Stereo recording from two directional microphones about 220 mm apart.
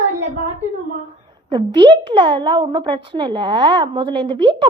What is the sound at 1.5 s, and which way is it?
A woman's voice, 20° right (ahead or behind).